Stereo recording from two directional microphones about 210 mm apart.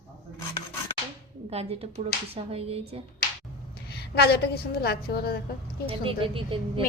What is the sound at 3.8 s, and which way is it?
A woman's voice, 50° left (ahead or behind).